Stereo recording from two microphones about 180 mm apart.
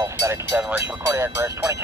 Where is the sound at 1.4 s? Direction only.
15° right (ahead or behind).